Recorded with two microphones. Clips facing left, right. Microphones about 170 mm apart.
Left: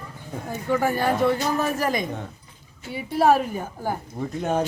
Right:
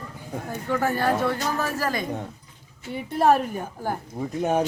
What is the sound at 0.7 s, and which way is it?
Speech, 10° left (ahead or behind).